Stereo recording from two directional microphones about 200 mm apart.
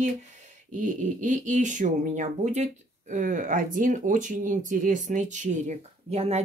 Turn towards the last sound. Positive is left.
turn(degrees=-30)  # may be behind; listen again after turning